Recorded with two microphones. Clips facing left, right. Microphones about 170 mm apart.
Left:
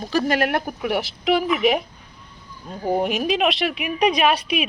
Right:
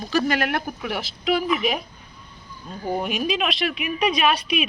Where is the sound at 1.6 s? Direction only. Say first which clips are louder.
Left 6 dB; 70° left (ahead or behind).